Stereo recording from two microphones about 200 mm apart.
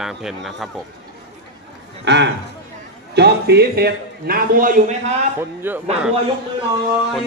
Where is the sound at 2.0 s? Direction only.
60° right (ahead or behind); by 4.9 s 40° right (ahead or behind).